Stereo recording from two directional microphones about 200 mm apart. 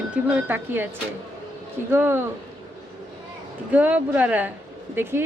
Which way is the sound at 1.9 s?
10° right (ahead or behind).